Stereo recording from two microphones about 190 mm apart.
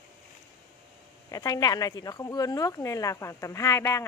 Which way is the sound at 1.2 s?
20° left (ahead or behind).